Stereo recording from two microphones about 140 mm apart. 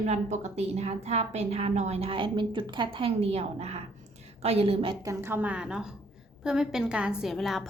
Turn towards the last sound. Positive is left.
turn(degrees=0)  # may be behind; listen again after turning